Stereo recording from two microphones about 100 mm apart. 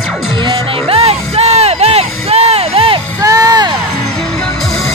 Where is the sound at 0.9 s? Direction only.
80° right.